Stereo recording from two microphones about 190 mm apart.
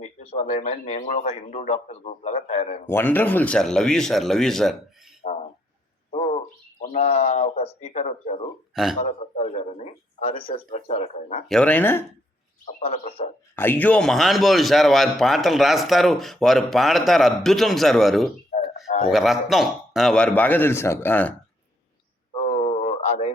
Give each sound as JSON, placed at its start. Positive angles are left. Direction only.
{"t": 0.0, "sound": "speech", "side_deg": 35}
{"t": 2.8, "sound": "a man's voice", "side_deg": 10}
{"t": 5.2, "sound": "a sound", "side_deg": 40}
{"t": 6.1, "sound": "bird", "side_deg": 30}
{"t": 6.8, "sound": "speech", "side_deg": 35}
{"t": 8.7, "sound": "a man's voice", "side_deg": 0}
{"t": 9.0, "sound": "speech", "side_deg": 35}
{"t": 11.4, "sound": "a man's voice", "side_deg": 5}
{"t": 12.8, "sound": "speech", "side_deg": 30}
{"t": 13.6, "sound": "a man's voice", "side_deg": 10}
{"t": 22.4, "sound": "a sound", "side_deg": 30}